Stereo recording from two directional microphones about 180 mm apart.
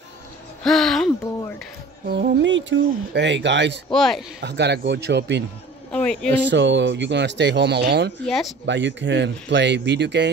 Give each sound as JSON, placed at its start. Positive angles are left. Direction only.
{"t": 0.7, "sound": "speech", "side_deg": 0}
{"t": 2.0, "sound": "speech", "side_deg": -75}
{"t": 3.9, "sound": "a man's voice", "side_deg": 0}
{"t": 4.4, "sound": "speech", "side_deg": -75}
{"t": 5.9, "sound": "a man's voice", "side_deg": 5}
{"t": 6.5, "sound": "speech", "side_deg": -80}
{"t": 8.3, "sound": "a man's voice", "side_deg": 0}
{"t": 8.6, "sound": "speech", "side_deg": -85}